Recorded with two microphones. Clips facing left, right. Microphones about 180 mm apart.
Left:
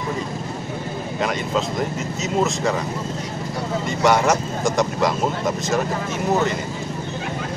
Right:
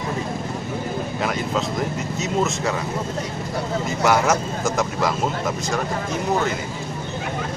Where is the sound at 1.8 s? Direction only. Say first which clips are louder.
Even; centre (ahead or behind).